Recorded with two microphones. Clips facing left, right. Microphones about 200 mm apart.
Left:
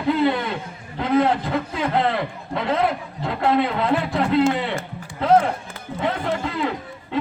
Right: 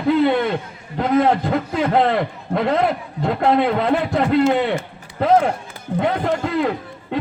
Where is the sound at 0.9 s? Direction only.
50° right (ahead or behind).